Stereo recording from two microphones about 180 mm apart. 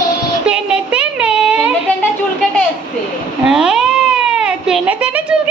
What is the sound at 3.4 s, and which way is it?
Cat, 5° right (ahead or behind).